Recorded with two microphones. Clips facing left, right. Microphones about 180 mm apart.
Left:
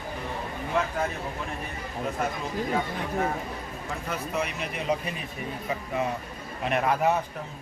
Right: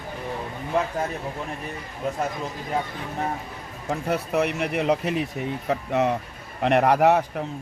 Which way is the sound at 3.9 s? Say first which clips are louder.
Right 8 dB; 65° right (ahead or behind).